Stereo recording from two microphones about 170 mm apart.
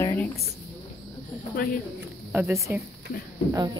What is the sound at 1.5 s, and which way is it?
Speech, 55° left (ahead or behind).